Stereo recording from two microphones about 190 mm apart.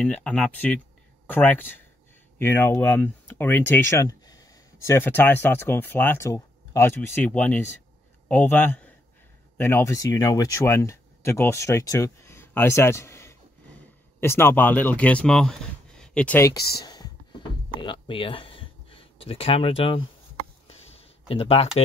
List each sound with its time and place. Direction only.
0.0 s speech: 5° left (ahead or behind)
16.8 s a sound: 20° left (ahead or behind)
21.3 s speech: 30° left (ahead or behind)